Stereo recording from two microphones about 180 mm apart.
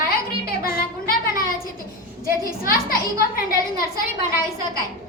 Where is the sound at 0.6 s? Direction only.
55° left (ahead or behind).